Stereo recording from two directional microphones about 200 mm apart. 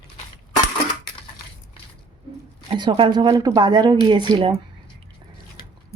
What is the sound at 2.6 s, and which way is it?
Speech, 25° right (ahead or behind).